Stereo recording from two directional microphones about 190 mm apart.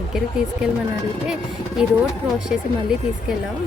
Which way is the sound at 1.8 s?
5° right (ahead or behind).